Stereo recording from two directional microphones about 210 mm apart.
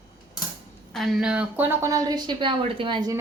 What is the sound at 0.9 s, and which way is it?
A woman's voice, centre (ahead or behind).